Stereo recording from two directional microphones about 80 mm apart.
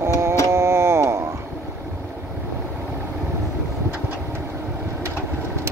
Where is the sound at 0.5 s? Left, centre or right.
Right.